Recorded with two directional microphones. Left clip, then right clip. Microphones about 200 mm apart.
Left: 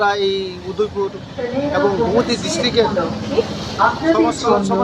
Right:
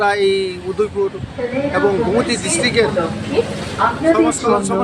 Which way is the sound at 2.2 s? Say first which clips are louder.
Right 1 dB; 15° right (ahead or behind).